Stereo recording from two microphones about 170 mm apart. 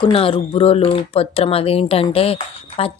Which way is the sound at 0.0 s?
35° left (ahead or behind).